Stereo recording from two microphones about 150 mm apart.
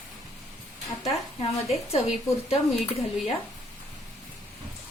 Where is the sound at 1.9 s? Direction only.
45° left (ahead or behind).